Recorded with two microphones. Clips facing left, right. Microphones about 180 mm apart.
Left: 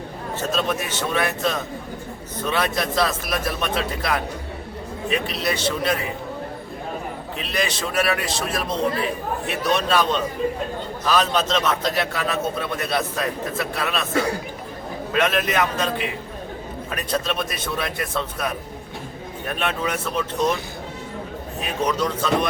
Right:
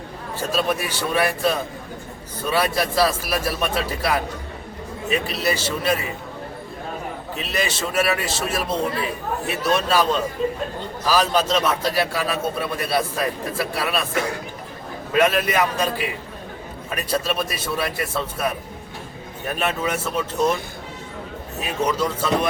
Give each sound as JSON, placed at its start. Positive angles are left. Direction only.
{"t": 0.5, "sound": "a man's voice", "side_deg": -10}
{"t": 7.3, "sound": "a man's voice", "side_deg": -5}
{"t": 14.1, "sound": "a man's voice", "side_deg": 30}
{"t": 15.1, "sound": "a man's voice", "side_deg": -10}
{"t": 21.8, "sound": "a man's voice", "side_deg": -10}